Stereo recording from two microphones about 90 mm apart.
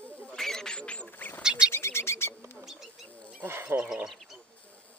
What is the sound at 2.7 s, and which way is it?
Bird, 5° right (ahead or behind).